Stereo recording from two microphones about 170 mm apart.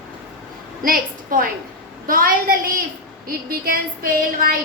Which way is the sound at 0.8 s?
55° right (ahead or behind).